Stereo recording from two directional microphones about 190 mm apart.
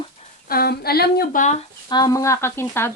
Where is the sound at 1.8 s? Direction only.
20° left (ahead or behind).